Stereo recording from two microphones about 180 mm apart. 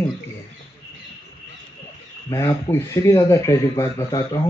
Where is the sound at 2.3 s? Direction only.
15° left (ahead or behind).